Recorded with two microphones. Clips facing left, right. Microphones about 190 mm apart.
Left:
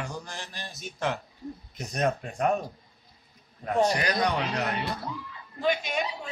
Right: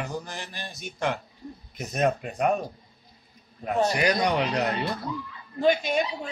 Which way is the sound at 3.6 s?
10° right (ahead or behind).